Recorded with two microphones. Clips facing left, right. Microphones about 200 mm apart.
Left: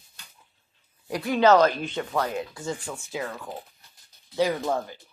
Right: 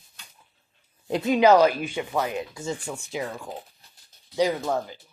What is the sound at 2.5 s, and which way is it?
Speech, 25° right (ahead or behind).